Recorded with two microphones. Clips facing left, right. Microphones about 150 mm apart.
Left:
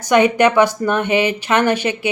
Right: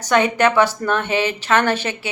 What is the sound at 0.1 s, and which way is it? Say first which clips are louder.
Speech: left 3 dB; 15° left (ahead or behind).